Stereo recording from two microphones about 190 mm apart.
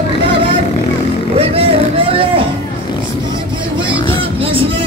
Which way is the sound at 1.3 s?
30° right (ahead or behind).